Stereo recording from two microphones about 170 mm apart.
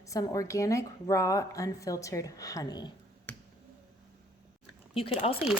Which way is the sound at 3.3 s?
10° left (ahead or behind).